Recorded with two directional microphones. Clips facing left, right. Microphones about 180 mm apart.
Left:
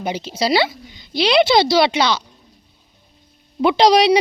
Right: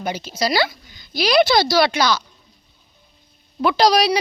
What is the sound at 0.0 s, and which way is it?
A woman's voice, 25° left (ahead or behind).